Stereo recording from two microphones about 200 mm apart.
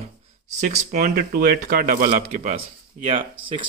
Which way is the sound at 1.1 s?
50° right (ahead or behind).